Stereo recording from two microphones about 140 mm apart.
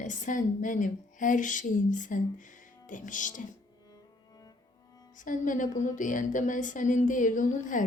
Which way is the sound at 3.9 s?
25° left (ahead or behind).